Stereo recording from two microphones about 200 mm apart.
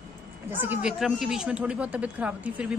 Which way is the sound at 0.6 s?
5° right (ahead or behind).